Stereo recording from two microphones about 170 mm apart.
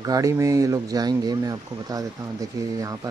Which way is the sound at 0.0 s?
20° right (ahead or behind).